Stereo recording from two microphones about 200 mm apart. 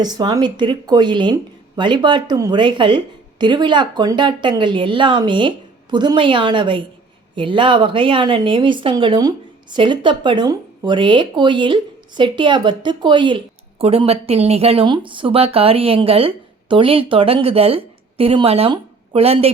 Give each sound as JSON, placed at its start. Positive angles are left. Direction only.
{"t": 0.0, "sound": "a woman's voice", "side_deg": -20}